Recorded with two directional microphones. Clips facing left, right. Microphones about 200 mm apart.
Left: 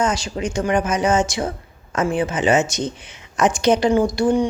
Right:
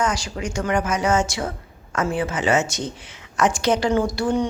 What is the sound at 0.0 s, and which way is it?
A woman's voice, 25° left (ahead or behind).